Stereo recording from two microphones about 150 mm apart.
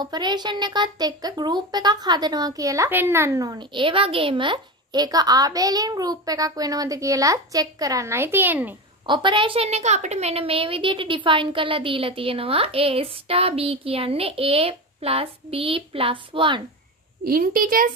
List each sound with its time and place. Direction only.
0.0 s speech: 30° right (ahead or behind); by 8.7 s 10° right (ahead or behind)
9.0 s a woman's voice: 30° right (ahead or behind)
17.2 s a woman's voice: 75° right (ahead or behind)